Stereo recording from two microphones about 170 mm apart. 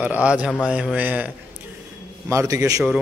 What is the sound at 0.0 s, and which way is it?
A man's voice, 10° right (ahead or behind).